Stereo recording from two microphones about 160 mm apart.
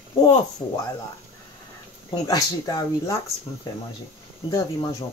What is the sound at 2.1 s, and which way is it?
Speech, 20° left (ahead or behind).